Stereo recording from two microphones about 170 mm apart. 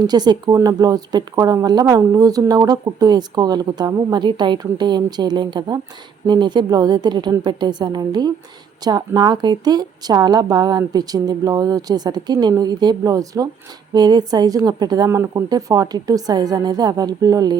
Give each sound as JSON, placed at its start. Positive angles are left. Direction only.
{"t": 0.1, "sound": "speech", "side_deg": -25}